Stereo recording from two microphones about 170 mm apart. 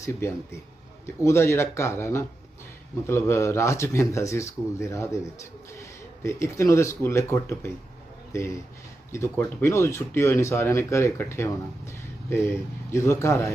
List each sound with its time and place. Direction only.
0.0 s speech: 15° left (ahead or behind)